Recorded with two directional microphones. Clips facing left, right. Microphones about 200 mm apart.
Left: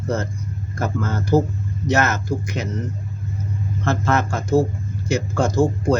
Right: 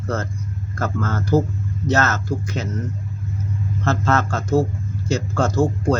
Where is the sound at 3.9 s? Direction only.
15° left (ahead or behind).